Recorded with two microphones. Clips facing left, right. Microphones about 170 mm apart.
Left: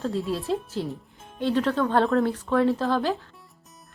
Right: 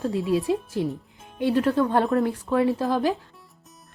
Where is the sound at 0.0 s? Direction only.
15° right (ahead or behind).